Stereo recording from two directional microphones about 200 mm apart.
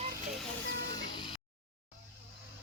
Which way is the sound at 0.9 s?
25° left (ahead or behind).